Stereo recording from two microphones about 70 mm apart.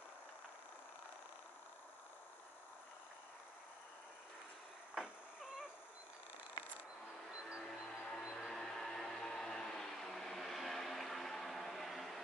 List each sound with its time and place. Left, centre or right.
5.0 s cat: centre
7.2 s train: centre
7.6 s train: centre
8.2 s vehicle: centre